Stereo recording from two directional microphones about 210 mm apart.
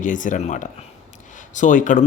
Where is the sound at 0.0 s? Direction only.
40° left (ahead or behind).